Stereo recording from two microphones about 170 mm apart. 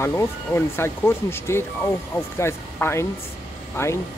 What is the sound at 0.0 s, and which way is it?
Speech, 15° left (ahead or behind).